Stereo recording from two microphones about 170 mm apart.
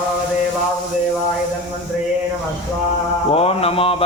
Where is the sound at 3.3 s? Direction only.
35° left (ahead or behind).